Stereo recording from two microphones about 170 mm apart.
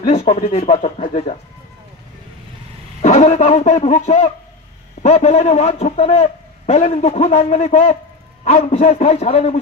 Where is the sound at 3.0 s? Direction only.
45° left (ahead or behind).